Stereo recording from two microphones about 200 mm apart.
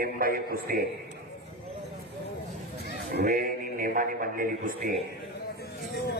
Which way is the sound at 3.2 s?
45° right (ahead or behind).